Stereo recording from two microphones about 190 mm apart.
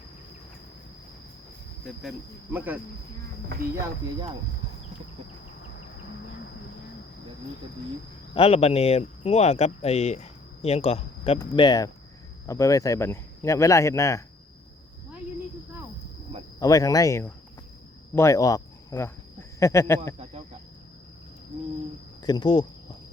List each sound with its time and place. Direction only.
2.0 s speech: 5° right (ahead or behind)
8.4 s speech: 30° left (ahead or behind); by 14.3 s 15° left (ahead or behind)
16.6 s speech: 20° left (ahead or behind)
22.2 s speech: 20° left (ahead or behind)